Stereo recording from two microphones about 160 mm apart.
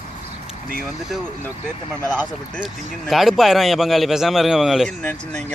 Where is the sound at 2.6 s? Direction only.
Centre (ahead or behind).